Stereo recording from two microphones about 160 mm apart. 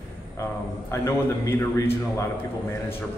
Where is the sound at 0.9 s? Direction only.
15° left (ahead or behind).